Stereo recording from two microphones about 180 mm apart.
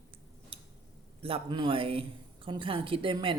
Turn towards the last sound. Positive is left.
turn(degrees=-30)  # may be behind; listen again after turning